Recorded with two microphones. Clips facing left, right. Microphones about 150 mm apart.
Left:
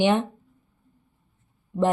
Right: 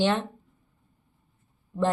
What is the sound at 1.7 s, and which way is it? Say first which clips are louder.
Speech: left 3 dB; 15° left (ahead or behind).